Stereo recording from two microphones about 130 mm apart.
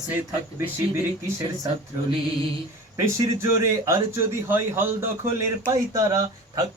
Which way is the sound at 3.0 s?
20° right (ahead or behind).